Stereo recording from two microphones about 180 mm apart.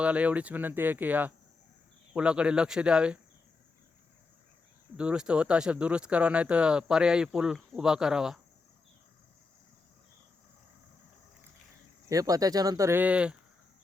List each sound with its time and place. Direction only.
0.0 s speech: 5° right (ahead or behind)
4.9 s speech: 5° right (ahead or behind)
12.0 s speech: 20° right (ahead or behind)